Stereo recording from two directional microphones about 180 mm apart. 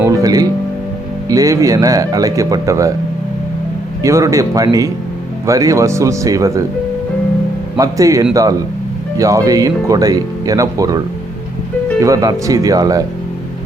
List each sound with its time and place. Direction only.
0.0 s music: 20° right (ahead or behind)
1.3 s speech: 20° right (ahead or behind)
4.0 s speech: 15° right (ahead or behind)
7.8 s speech: 20° right (ahead or behind)